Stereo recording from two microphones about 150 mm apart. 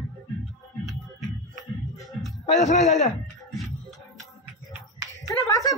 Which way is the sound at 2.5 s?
50° left (ahead or behind).